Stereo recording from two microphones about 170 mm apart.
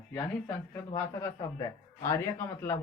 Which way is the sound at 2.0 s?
15° left (ahead or behind).